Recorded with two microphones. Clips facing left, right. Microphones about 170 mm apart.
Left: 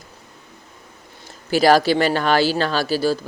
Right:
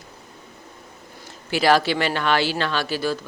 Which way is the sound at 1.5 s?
40° left (ahead or behind).